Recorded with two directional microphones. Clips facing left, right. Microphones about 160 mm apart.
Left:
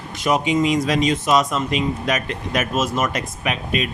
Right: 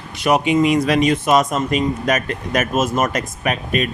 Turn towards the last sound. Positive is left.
turn(degrees=-45)  # may be behind; listen again after turning